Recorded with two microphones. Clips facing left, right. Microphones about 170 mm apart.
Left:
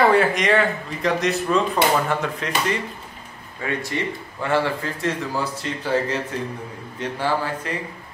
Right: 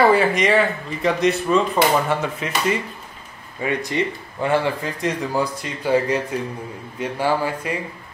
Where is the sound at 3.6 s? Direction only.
20° right (ahead or behind).